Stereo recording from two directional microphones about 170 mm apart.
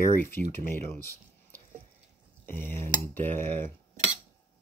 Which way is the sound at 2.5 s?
15° left (ahead or behind).